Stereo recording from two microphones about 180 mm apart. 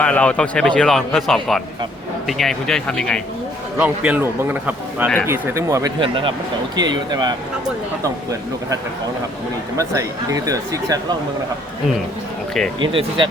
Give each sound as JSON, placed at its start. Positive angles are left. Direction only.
{"t": 0.0, "sound": "speech", "side_deg": 5}
{"t": 3.8, "sound": "a man's voice", "side_deg": -10}
{"t": 12.9, "sound": "speech", "side_deg": -30}